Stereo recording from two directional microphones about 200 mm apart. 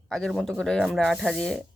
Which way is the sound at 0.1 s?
Centre (ahead or behind).